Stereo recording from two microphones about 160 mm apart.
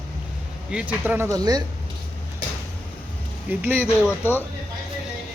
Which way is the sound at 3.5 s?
10° right (ahead or behind).